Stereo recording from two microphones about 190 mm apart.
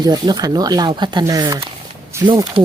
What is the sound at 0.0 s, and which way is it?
Speech, 20° right (ahead or behind).